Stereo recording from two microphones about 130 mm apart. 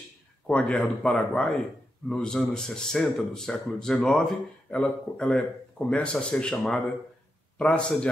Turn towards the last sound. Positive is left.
turn(degrees=10)  # may be behind; listen again after turning